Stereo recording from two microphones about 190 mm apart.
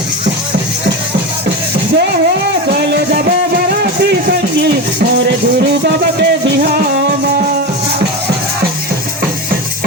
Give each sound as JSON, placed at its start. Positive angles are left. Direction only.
{"t": 2.6, "sound": "music", "side_deg": -60}
{"t": 6.1, "sound": "music", "side_deg": -65}